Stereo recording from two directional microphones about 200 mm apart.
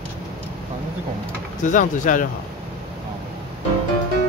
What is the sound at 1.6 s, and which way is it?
Speech, 40° left (ahead or behind).